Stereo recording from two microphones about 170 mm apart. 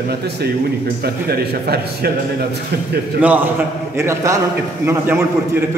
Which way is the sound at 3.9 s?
15° right (ahead or behind).